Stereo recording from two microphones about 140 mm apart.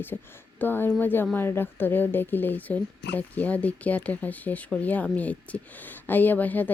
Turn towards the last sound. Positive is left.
turn(degrees=10)  # may be behind; listen again after turning